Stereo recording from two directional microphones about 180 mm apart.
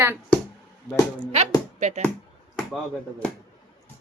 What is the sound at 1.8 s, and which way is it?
Speech, 40° right (ahead or behind).